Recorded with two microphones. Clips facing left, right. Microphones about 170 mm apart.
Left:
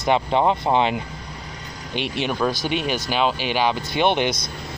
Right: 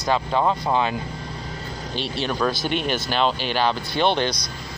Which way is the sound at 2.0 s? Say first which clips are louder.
Left 2 dB; 15° left (ahead or behind).